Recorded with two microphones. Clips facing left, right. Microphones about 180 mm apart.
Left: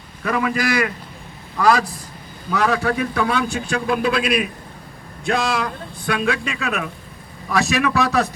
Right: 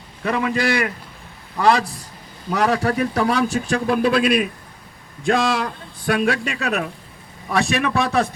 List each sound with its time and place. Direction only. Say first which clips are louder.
0.2 s a man's voice: even; 30° right (ahead or behind)